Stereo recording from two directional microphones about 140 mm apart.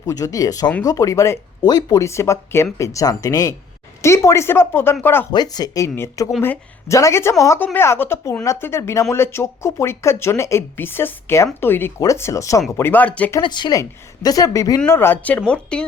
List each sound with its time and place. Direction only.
0.0 s speech: 25° left (ahead or behind)
5.3 s speech: 30° left (ahead or behind); by 13.3 s 10° left (ahead or behind)
13.4 s speech: 30° left (ahead or behind); by 15.9 s 5° left (ahead or behind)